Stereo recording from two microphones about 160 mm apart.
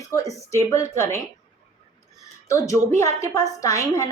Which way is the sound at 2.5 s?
20° left (ahead or behind).